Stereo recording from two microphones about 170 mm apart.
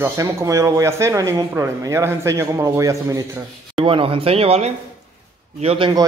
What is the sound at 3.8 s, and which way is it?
Speech, 30° right (ahead or behind).